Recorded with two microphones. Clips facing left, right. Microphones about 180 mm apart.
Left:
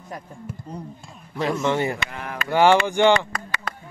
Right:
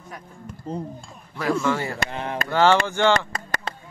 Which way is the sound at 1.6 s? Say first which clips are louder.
Left 2 dB; 20° left (ahead or behind).